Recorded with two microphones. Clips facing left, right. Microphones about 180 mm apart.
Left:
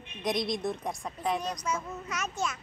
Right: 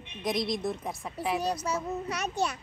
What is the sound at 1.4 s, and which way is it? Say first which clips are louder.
A child's voice: right 3 dB; 35° right (ahead or behind).